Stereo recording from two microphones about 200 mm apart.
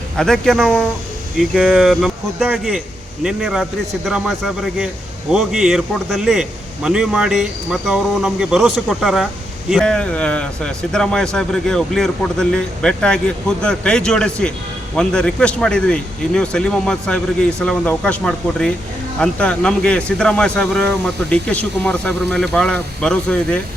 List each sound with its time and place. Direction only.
0.2 s speech: centre (ahead or behind)